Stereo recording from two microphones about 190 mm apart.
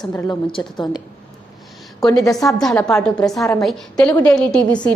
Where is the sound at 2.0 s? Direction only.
20° left (ahead or behind).